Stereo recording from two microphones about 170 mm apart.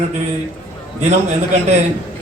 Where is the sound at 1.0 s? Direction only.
40° right (ahead or behind).